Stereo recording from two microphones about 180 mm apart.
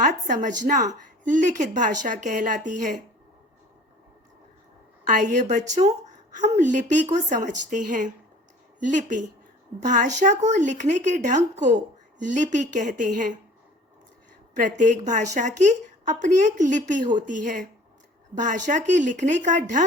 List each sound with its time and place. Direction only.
0.0 s a woman's voice: 45° right (ahead or behind)
5.0 s a woman's voice: 45° right (ahead or behind)
14.5 s a woman's voice: 45° right (ahead or behind)